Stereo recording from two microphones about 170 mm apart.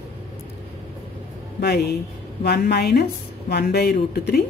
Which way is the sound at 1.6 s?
70° left (ahead or behind).